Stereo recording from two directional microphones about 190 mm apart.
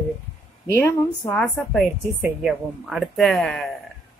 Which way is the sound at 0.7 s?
10° left (ahead or behind).